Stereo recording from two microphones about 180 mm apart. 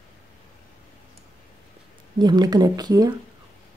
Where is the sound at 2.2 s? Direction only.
25° right (ahead or behind).